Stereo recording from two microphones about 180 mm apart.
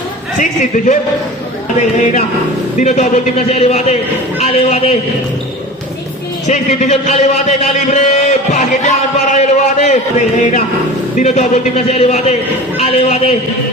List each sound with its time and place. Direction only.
0.3 s a man's voice: 45° left (ahead or behind)
2.7 s speech: 40° left (ahead or behind)
6.5 s speech: 40° left (ahead or behind)
7.9 s music: 40° left (ahead or behind)
9.3 s a sound: 40° left (ahead or behind)
11.2 s speech: 40° left (ahead or behind)